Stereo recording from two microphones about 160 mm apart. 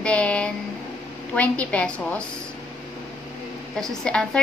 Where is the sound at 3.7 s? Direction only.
5° left (ahead or behind).